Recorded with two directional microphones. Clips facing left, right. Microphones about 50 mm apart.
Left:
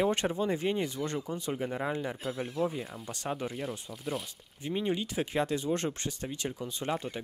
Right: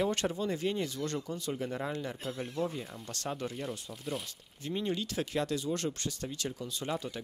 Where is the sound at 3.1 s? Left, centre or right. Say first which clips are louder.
Left 2 dB; centre.